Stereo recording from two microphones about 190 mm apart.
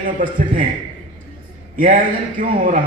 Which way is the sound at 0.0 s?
45° right (ahead or behind).